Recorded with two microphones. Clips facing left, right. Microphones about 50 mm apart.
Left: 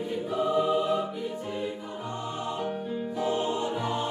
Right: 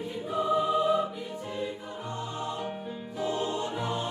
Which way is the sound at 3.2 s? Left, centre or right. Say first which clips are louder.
Left 1 dB; left.